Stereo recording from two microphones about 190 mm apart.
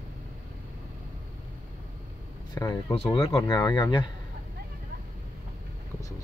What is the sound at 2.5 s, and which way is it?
Speech, 20° left (ahead or behind).